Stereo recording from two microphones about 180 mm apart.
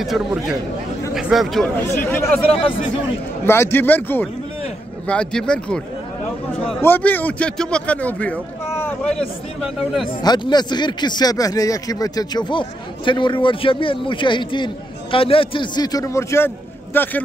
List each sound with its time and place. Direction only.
0.0 s speech: centre (ahead or behind)
1.9 s a man's voice: 10° left (ahead or behind)
3.4 s a man's voice: 15° left (ahead or behind)
10.0 s speech: 25° left (ahead or behind)